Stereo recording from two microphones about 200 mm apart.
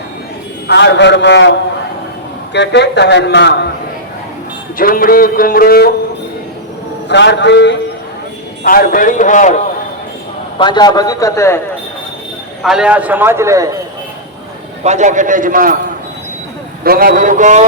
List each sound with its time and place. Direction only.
0.7 s a man's voice: 60° left (ahead or behind)
4.8 s music: 45° left (ahead or behind)
7.1 s a man's voice: 60° left (ahead or behind)
8.6 s a man's voice: 45° left (ahead or behind)
10.6 s a man's voice: 20° left (ahead or behind)
12.6 s a man's voice: 5° right (ahead or behind)
14.8 s a man's voice: 35° right (ahead or behind)
16.8 s a man's voice: 50° right (ahead or behind)